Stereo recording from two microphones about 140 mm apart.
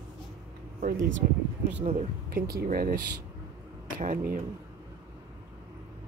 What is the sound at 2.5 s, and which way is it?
Speech, 90° right.